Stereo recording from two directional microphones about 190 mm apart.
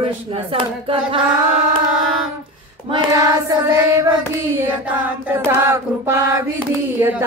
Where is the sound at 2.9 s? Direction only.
20° right (ahead or behind).